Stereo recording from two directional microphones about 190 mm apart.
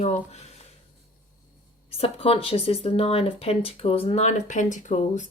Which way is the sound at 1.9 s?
30° left (ahead or behind).